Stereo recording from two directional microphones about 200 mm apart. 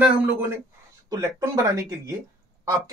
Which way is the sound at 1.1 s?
15° right (ahead or behind).